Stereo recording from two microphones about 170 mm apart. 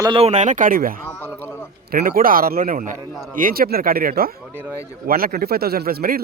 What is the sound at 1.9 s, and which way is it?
Speech, 60° right (ahead or behind).